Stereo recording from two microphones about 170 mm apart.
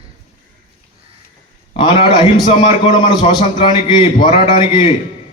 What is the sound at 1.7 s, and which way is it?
A man's voice, 30° left (ahead or behind).